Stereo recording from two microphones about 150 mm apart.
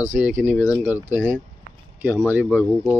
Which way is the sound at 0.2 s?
10° right (ahead or behind).